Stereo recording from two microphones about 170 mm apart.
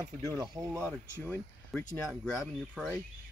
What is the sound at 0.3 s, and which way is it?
Speech, 20° right (ahead or behind).